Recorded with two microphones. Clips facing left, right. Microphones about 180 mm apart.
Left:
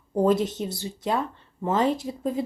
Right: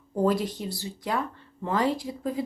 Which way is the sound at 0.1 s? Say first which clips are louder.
Left 3 dB; 20° left (ahead or behind).